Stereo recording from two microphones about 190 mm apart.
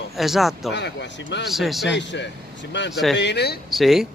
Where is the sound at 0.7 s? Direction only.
65° left (ahead or behind).